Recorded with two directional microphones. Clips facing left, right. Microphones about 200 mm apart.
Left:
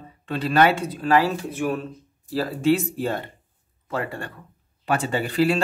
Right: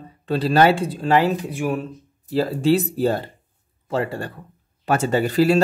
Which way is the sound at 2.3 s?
30° right (ahead or behind).